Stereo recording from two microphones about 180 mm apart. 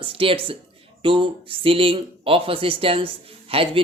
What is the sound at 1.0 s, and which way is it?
Speech, 30° right (ahead or behind).